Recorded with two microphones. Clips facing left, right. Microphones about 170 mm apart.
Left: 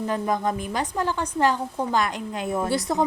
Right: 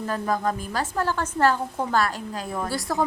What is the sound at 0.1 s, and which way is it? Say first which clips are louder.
A woman's voice: right 1 dB; 20° left (ahead or behind).